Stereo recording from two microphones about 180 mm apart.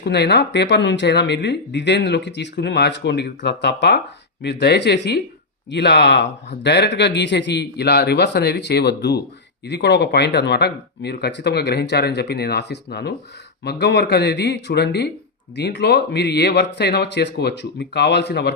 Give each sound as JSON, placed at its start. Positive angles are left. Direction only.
{"t": 0.0, "sound": "speech", "side_deg": 70}